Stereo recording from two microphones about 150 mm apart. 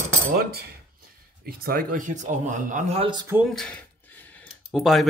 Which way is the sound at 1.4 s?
75° right (ahead or behind).